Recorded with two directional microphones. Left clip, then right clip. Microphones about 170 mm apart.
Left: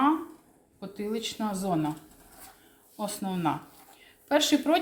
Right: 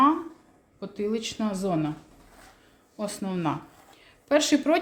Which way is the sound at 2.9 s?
35° right (ahead or behind).